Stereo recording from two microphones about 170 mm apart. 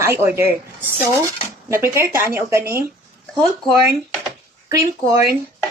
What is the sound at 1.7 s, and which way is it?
Speech, 15° right (ahead or behind).